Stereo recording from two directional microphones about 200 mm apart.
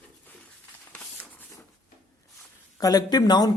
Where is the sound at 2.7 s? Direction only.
20° left (ahead or behind).